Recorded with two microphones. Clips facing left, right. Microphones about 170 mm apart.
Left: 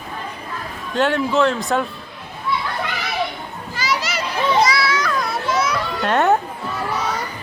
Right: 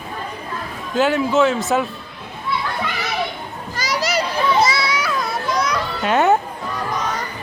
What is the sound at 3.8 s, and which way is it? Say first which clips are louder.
Children playing: right 2 dB; 40° right (ahead or behind).